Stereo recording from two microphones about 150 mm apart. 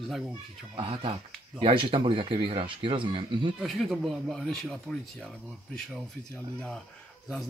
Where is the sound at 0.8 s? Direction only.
35° right (ahead or behind).